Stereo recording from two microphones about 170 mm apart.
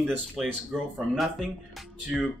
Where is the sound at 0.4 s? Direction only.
Centre (ahead or behind).